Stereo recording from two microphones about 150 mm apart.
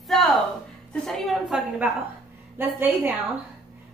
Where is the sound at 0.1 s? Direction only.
Centre (ahead or behind).